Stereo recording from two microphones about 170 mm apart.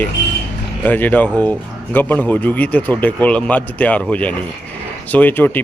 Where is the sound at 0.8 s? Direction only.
10° left (ahead or behind).